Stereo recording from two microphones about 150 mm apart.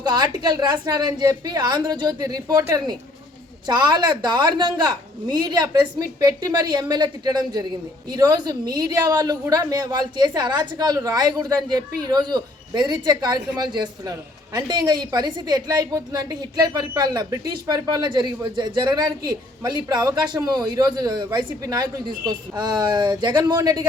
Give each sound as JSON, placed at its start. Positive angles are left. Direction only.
{"t": 0.0, "sound": "a woman's voice", "side_deg": -30}